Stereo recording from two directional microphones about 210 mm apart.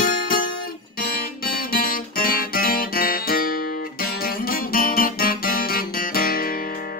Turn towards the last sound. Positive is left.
turn(degrees=45)  # may be behind; listen again after turning